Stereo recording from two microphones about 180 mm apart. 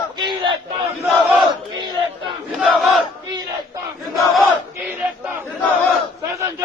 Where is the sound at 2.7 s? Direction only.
Centre (ahead or behind).